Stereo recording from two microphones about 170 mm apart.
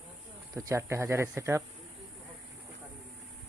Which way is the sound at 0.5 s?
15° right (ahead or behind).